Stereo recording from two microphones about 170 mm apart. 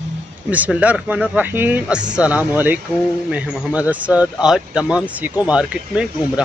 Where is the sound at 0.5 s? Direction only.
10° right (ahead or behind).